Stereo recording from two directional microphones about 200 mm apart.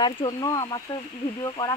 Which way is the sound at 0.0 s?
20° left (ahead or behind).